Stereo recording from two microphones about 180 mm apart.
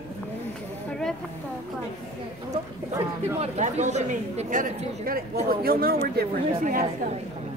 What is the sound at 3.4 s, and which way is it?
Speech, 40° right (ahead or behind).